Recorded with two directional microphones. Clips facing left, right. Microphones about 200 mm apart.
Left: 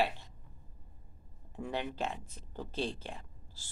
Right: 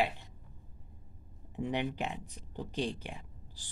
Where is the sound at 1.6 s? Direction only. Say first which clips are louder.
Right 3 dB; 15° right (ahead or behind).